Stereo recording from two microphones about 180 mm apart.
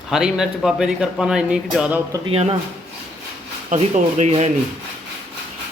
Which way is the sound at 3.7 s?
40° right (ahead or behind).